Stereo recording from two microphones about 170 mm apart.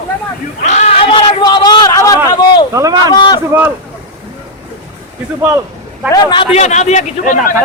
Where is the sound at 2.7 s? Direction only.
20° right (ahead or behind).